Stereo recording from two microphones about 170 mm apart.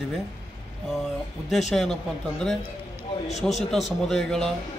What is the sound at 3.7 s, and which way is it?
Speech, centre (ahead or behind).